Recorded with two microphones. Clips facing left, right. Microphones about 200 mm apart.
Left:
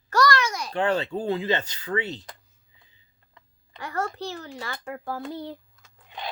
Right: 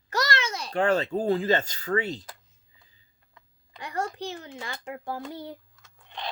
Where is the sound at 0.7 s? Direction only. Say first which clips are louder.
Right 2 dB; 40° right (ahead or behind).